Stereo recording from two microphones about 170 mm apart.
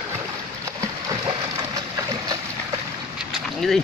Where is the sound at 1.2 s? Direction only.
20° right (ahead or behind).